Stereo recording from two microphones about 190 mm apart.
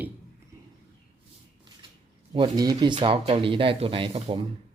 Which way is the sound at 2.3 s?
25° right (ahead or behind).